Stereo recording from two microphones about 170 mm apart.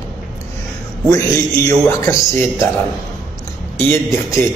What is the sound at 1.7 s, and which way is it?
Speech, 15° left (ahead or behind).